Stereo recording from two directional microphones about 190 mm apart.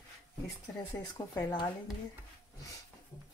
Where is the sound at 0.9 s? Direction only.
20° left (ahead or behind).